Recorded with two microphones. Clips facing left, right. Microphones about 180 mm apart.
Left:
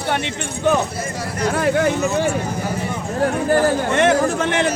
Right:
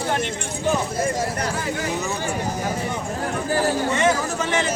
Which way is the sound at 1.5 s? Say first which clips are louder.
Left 8 dB; 70° left (ahead or behind).